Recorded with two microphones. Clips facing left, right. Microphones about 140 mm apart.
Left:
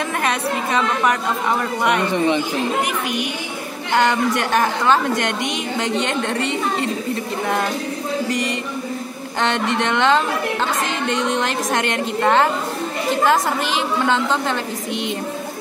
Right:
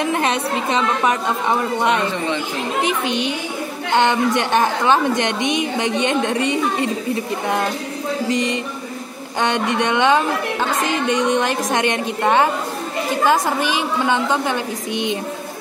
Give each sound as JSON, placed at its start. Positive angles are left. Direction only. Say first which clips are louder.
{"t": 0.0, "sound": "a woman's voice", "louder": "right 2 dB", "side_deg": -25}
{"t": 2.1, "sound": "speech", "louder": "left 5 dB", "side_deg": 15}
{"t": 2.8, "sound": "a woman's voice", "louder": "right 2 dB", "side_deg": -25}
{"t": 8.3, "sound": "a woman's voice", "louder": "right 2 dB", "side_deg": -20}